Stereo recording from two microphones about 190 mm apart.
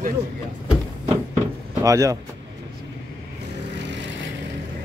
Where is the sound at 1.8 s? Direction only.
15° right (ahead or behind).